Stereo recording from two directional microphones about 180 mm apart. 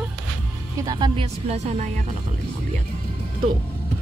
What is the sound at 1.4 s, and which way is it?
Speech, 40° right (ahead or behind).